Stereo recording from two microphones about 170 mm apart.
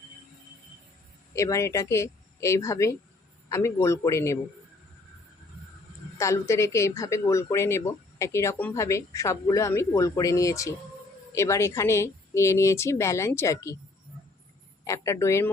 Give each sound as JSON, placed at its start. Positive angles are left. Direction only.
{"t": 1.4, "sound": "speech", "side_deg": 20}
{"t": 6.1, "sound": "speech", "side_deg": 15}
{"t": 14.8, "sound": "speech", "side_deg": 15}